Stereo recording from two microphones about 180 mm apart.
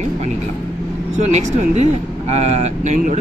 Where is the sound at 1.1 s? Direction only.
40° right (ahead or behind).